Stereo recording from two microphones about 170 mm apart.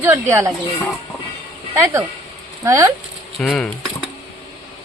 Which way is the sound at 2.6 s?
20° right (ahead or behind).